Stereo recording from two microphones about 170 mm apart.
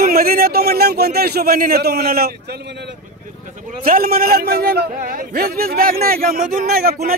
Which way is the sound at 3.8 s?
60° right (ahead or behind).